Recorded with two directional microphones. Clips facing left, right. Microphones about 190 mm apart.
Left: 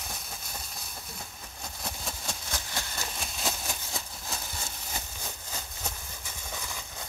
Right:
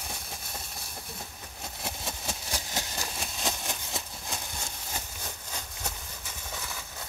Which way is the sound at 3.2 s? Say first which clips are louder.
Even; centre (ahead or behind).